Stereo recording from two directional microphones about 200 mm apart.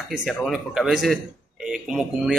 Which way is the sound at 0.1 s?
Centre (ahead or behind).